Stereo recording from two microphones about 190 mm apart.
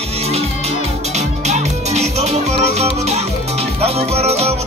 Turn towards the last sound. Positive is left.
turn(degrees=-35)  # may be behind; listen again after turning